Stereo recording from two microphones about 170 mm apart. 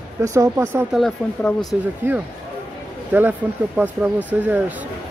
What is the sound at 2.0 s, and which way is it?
Speech, 15° right (ahead or behind).